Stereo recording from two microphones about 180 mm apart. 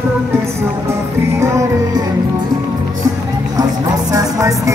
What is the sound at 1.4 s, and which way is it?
Music, 15° right (ahead or behind).